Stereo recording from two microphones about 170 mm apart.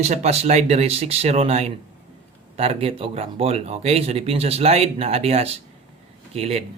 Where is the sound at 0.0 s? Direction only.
40° right (ahead or behind).